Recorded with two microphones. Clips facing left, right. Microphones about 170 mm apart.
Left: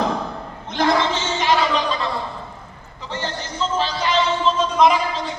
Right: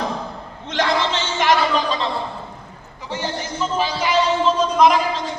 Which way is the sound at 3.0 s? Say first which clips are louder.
Right 2 dB; 10° right (ahead or behind).